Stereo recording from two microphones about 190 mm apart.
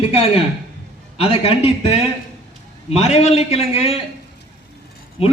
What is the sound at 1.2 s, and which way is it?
A man's voice, 30° left (ahead or behind).